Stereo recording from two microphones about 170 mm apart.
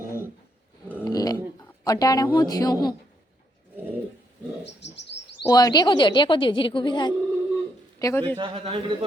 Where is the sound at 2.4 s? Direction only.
20° left (ahead or behind).